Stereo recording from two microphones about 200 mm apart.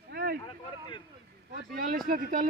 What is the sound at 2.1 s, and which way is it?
Speech, 45° right (ahead or behind).